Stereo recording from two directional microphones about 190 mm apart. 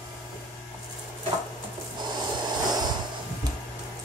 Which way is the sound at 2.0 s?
25° right (ahead or behind).